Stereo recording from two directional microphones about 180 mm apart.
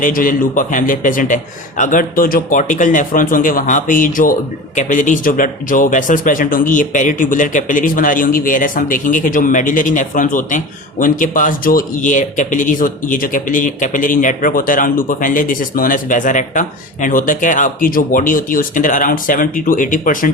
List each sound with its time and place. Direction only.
0.0 s a man's voice: 50° left (ahead or behind)